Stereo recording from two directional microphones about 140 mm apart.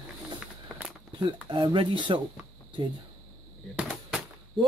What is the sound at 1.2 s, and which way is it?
Speech, 35° right (ahead or behind).